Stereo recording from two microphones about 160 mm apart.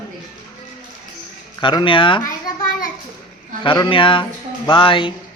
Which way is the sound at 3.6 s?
30° left (ahead or behind).